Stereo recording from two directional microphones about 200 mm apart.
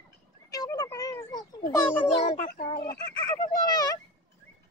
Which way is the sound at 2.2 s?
35° left (ahead or behind).